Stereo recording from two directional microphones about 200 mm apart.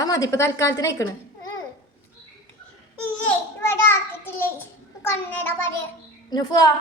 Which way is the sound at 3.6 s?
10° left (ahead or behind).